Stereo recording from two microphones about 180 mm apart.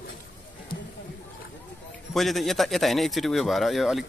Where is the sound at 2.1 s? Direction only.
Centre (ahead or behind).